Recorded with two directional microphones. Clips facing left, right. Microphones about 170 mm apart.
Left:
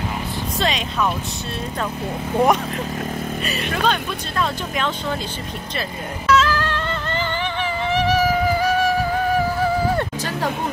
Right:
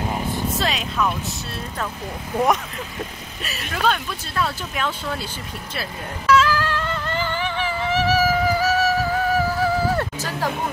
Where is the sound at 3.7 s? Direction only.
5° right (ahead or behind).